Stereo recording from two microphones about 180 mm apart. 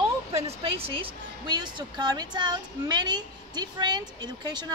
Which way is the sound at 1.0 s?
25° right (ahead or behind).